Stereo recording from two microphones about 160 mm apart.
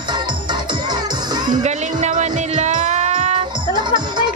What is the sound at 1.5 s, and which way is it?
Music, 50° right (ahead or behind).